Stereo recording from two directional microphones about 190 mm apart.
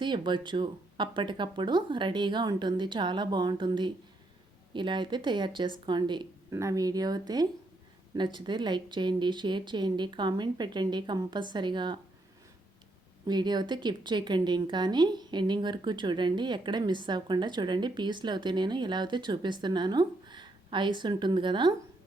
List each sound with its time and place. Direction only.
0.0 s speech: 25° right (ahead or behind)
13.2 s speech: 20° right (ahead or behind)